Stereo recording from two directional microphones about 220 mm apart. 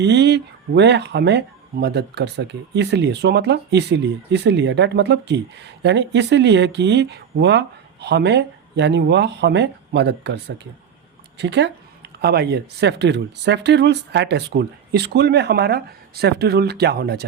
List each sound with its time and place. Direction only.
0.0 s speech: 50° right (ahead or behind)